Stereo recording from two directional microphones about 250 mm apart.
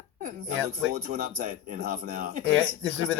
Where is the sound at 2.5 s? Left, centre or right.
Centre.